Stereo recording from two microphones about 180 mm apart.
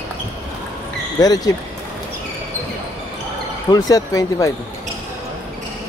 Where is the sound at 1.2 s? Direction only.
20° left (ahead or behind).